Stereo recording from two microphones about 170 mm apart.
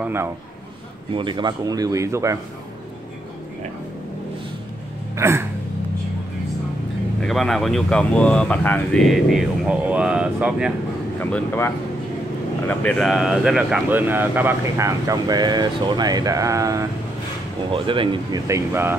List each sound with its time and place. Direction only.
0.0 s speech: 15° right (ahead or behind)
1.1 s speech: 30° right (ahead or behind)
5.1 s gasp: 15° right (ahead or behind)
7.2 s speech: 5° left (ahead or behind)
11.1 s speech: 10° left (ahead or behind); by 16.8 s 20° right (ahead or behind)
17.7 s speech: 30° right (ahead or behind); by 18.9 s 15° right (ahead or behind)